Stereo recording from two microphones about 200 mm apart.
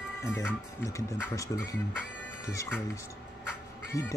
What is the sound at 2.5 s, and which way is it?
Speech, 15° left (ahead or behind).